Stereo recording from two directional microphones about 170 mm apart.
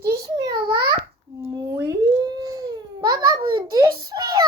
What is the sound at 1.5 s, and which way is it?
Crying, 20° right (ahead or behind).